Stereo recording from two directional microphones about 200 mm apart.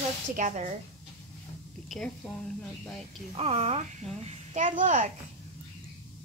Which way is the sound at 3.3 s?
30° right (ahead or behind).